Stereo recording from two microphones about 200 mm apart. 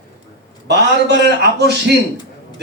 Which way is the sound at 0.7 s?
55° right (ahead or behind).